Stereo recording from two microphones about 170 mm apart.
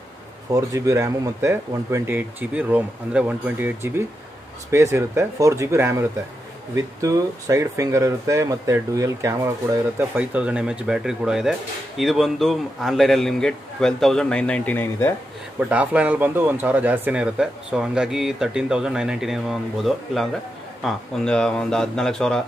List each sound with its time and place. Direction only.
0.5 s speech: 20° right (ahead or behind); by 15.1 s 10° left (ahead or behind)
15.7 s speech: 10° right (ahead or behind)